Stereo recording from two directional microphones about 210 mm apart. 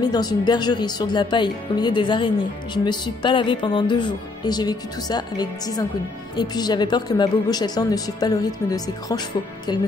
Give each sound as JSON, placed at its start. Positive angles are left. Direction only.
{"t": 0.0, "sound": "speech", "side_deg": 20}